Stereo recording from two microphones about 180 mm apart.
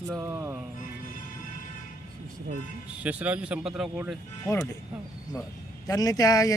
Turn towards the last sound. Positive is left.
turn(degrees=20)  # may be behind; listen again after turning